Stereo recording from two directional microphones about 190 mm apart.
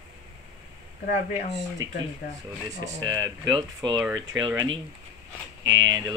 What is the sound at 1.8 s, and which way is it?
Speech, 90° right.